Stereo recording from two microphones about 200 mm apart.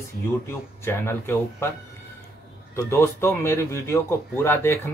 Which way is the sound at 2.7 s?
15° left (ahead or behind).